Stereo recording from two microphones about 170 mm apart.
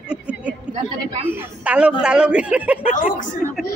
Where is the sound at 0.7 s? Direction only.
30° right (ahead or behind).